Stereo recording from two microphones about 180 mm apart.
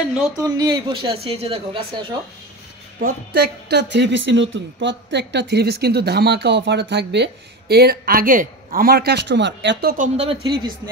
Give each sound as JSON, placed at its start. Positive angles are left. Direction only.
{"t": 0.6, "sound": "speech", "side_deg": -25}
{"t": 3.0, "sound": "speech", "side_deg": -65}
{"t": 9.9, "sound": "speech", "side_deg": -35}